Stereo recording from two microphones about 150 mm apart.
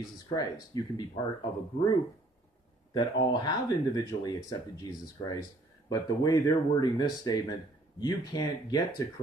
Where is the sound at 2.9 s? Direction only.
30° left (ahead or behind).